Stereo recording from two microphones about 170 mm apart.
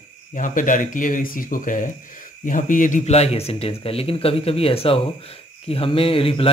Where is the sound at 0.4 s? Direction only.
50° left (ahead or behind).